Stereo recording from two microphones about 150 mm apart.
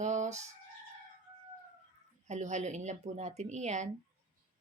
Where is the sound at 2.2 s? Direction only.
50° right (ahead or behind).